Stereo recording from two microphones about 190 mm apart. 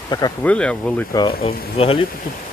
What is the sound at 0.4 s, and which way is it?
Speech, 5° left (ahead or behind).